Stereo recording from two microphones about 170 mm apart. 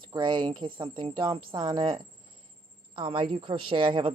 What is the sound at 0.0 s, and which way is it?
A woman's voice, 25° right (ahead or behind).